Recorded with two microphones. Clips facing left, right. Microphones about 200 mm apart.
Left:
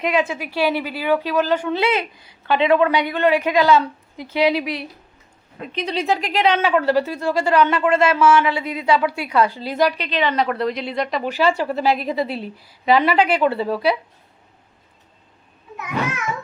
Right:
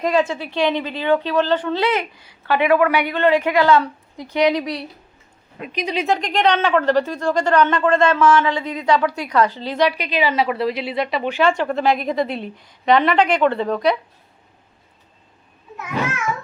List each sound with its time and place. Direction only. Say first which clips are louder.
0.0 s speech: right 2 dB; centre (ahead or behind)
2.5 s a woman's voice: even; 20° left (ahead or behind)
3.1 s speech: right 1 dB; 15° left (ahead or behind)
5.5 s speech: right 1 dB; 15° right (ahead or behind)
6.1 s speech: right 1 dB; 5° left (ahead or behind)
10.0 s speech: right 1 dB; 10° right (ahead or behind); by 13.9 s 5° left (ahead or behind)